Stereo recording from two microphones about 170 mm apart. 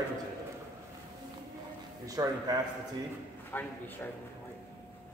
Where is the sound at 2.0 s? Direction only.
20° right (ahead or behind).